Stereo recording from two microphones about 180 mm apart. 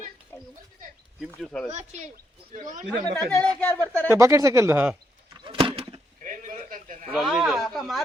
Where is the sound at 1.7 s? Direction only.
40° right (ahead or behind).